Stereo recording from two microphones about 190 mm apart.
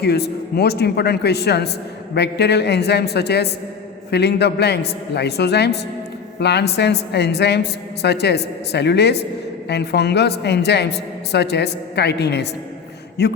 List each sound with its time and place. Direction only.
0.0 s a woman's voice: 60° left (ahead or behind)